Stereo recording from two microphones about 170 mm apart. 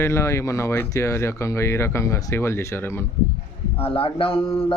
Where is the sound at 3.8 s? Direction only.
35° left (ahead or behind).